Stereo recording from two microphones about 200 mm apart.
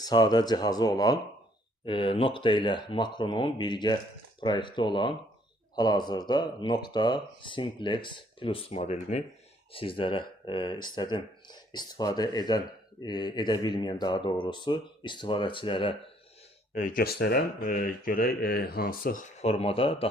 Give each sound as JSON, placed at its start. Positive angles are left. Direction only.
{"t": 0.0, "sound": "speech", "side_deg": 20}
{"t": 16.7, "sound": "speech", "side_deg": 40}
{"t": 19.4, "sound": "speech", "side_deg": 30}